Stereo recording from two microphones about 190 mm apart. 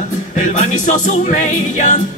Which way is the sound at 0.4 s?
40° left (ahead or behind).